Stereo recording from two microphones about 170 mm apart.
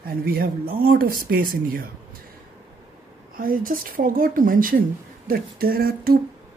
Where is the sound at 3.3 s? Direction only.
55° right (ahead or behind).